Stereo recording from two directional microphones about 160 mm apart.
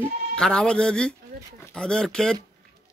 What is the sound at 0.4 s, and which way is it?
A man's voice, 5° left (ahead or behind).